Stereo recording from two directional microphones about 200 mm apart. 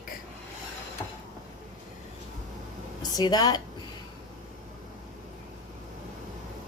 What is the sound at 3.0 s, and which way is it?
Speech, 20° left (ahead or behind).